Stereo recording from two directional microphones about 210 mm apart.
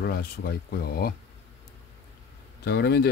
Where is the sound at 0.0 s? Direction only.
45° left (ahead or behind).